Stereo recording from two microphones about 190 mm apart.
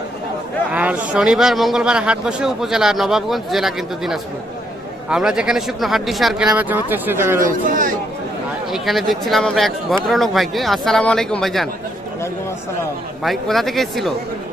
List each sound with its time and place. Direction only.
0.7 s speech: 5° right (ahead or behind)
7.3 s a man's voice: 45° right (ahead or behind)
8.7 s speech: centre (ahead or behind)
13.2 s speech: centre (ahead or behind)